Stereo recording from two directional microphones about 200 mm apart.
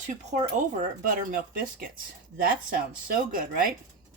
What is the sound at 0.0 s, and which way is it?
Speech, 40° right (ahead or behind).